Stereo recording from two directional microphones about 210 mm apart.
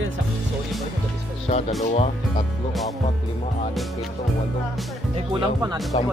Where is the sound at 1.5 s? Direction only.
30° left (ahead or behind).